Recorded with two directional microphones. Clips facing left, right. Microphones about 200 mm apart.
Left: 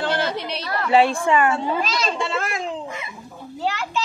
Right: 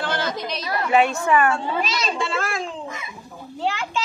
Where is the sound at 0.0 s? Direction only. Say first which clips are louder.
Left 2 dB; 30° left (ahead or behind).